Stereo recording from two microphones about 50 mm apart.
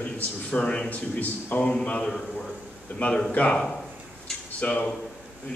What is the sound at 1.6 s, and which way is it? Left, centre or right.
A man's voice, centre.